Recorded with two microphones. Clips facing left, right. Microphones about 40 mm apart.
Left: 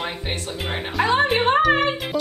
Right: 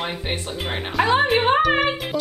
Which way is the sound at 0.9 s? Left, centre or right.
Centre.